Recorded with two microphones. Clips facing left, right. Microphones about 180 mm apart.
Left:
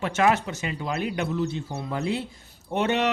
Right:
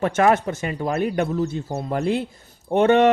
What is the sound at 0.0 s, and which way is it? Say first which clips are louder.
Speech: right 4 dB; 50° right (ahead or behind).